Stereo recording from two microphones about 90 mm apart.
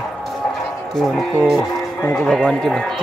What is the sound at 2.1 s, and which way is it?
Speech, 5° left (ahead or behind).